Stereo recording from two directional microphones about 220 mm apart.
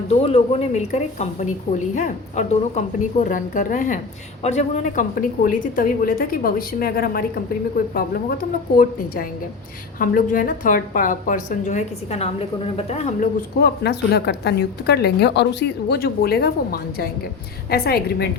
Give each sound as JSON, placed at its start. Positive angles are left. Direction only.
{"t": 0.1, "sound": "a woman's voice", "side_deg": 25}
{"t": 10.0, "sound": "a woman's voice", "side_deg": 40}
{"t": 13.6, "sound": "a woman's voice", "side_deg": 45}